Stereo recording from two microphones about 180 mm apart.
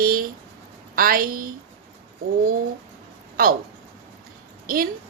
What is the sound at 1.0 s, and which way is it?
Speech, 55° right (ahead or behind).